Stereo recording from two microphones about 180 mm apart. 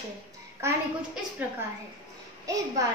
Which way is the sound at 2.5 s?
20° right (ahead or behind).